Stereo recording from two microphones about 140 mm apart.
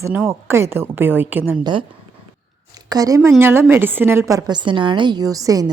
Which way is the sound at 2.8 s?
25° right (ahead or behind).